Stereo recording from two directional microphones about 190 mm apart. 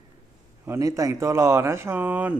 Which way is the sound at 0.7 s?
15° right (ahead or behind).